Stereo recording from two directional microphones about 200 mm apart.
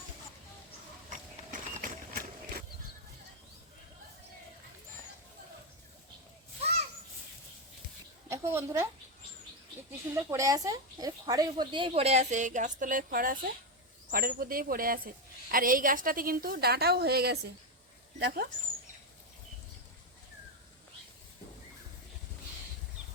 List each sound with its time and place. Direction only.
1.1 s clip-clop: 40° right (ahead or behind)
6.6 s children playing: 30° right (ahead or behind)
8.3 s a sound: 10° right (ahead or behind)
10.2 s a woman's voice: 15° right (ahead or behind); by 18.4 s 60° right (ahead or behind)